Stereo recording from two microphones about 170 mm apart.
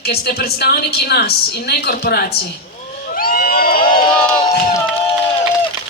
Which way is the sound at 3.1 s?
55° left (ahead or behind).